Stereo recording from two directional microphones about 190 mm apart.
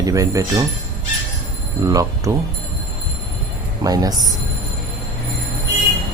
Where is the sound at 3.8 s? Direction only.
20° right (ahead or behind).